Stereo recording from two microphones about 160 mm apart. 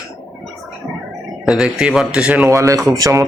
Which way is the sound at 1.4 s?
5° right (ahead or behind).